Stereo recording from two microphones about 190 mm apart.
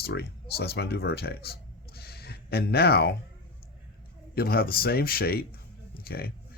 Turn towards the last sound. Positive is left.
turn(degrees=55)  # may be behind; listen again after turning